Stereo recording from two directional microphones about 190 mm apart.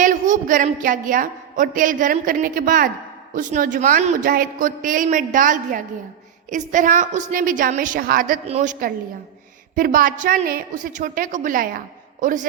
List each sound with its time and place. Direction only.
0.0 s speech: 45° right (ahead or behind)
8.4 s a man's voice: 35° right (ahead or behind)